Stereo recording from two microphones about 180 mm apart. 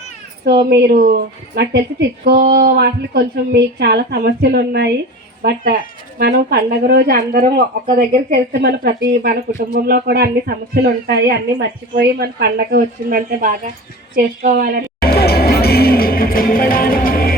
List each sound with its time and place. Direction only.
0.4 s a woman's voice: 65° right (ahead or behind)
15.0 s music: 60° left (ahead or behind)